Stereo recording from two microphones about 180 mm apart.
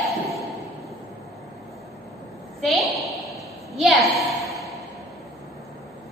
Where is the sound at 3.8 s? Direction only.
Centre (ahead or behind).